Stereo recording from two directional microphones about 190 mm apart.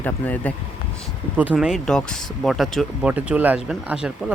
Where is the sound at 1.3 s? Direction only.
5° right (ahead or behind).